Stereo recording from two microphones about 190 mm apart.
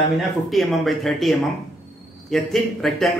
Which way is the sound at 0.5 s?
Centre (ahead or behind).